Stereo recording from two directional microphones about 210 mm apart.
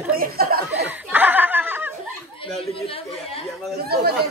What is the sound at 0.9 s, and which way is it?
Snicker, 10° right (ahead or behind).